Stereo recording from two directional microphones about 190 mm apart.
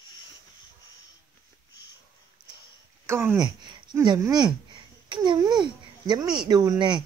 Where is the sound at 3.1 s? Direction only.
15° right (ahead or behind).